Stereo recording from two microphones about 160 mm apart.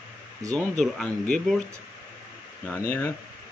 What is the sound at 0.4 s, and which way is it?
Speech, 20° right (ahead or behind).